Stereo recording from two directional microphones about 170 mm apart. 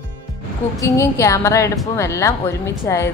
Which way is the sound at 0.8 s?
20° left (ahead or behind).